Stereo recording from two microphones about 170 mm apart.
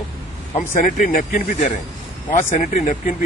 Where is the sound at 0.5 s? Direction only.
50° left (ahead or behind).